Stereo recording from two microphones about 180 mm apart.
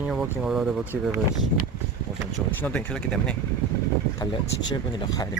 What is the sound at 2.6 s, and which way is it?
Speech, 5° left (ahead or behind).